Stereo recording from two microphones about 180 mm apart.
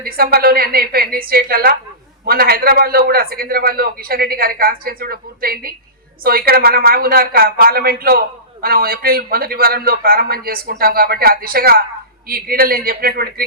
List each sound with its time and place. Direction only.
0.0 s a man's voice: 60° right (ahead or behind)